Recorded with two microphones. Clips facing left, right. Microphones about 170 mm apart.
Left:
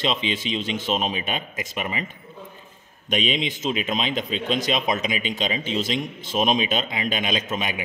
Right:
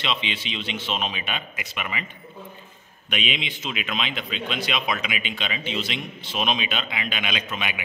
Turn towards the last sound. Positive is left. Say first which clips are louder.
# left 4 dB
turn(degrees=40)  # may be behind; listen again after turning